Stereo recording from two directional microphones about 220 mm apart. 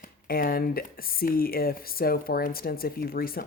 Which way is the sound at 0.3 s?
40° left (ahead or behind).